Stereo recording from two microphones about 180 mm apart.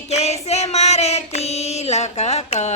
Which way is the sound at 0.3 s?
35° left (ahead or behind).